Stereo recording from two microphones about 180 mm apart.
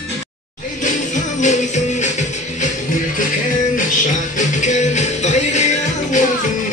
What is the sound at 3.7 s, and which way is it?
Music, 45° left (ahead or behind).